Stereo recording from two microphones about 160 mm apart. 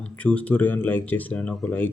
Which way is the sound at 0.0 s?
10° left (ahead or behind).